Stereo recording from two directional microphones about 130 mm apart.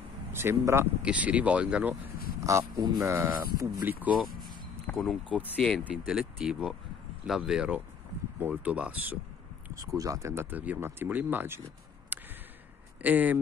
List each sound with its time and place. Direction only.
0.3 s speech: 20° right (ahead or behind)
2.4 s speech: 25° right (ahead or behind)
4.8 s speech: centre (ahead or behind)
9.8 s speech: 25° right (ahead or behind)
12.1 s a sound: 15° right (ahead or behind)
13.0 s speech: 15° right (ahead or behind)